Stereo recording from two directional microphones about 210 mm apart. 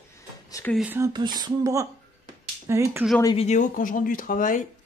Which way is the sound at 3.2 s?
30° left (ahead or behind).